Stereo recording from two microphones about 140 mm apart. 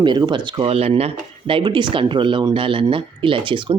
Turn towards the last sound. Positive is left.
turn(degrees=-35)  # may be behind; listen again after turning